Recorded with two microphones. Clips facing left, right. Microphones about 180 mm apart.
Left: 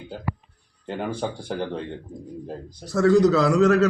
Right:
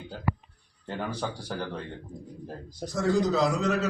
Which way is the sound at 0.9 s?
20° left (ahead or behind).